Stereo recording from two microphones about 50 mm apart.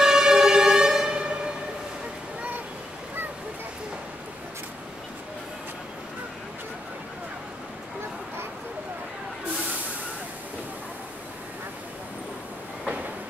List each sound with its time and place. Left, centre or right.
0.0 s siren: centre